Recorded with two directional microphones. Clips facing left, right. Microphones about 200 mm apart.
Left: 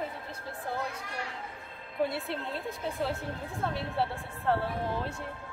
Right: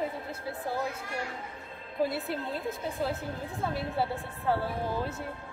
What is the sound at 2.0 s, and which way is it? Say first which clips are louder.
A woman's voice: right 1 dB; centre (ahead or behind).